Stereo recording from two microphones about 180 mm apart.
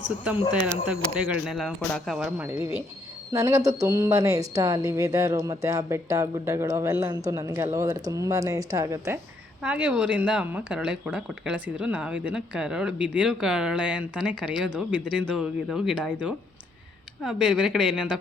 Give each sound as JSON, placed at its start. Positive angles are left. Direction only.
{"t": 0.9, "sound": "a woman's voice", "side_deg": -5}